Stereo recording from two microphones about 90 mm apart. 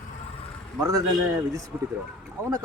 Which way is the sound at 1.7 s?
20° right (ahead or behind).